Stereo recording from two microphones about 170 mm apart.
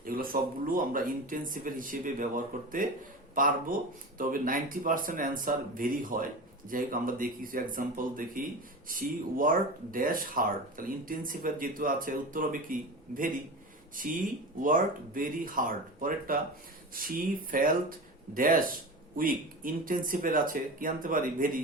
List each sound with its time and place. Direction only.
0.0 s speech: 55° right (ahead or behind)